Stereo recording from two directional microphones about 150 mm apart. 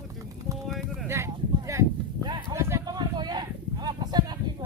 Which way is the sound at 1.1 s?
20° right (ahead or behind).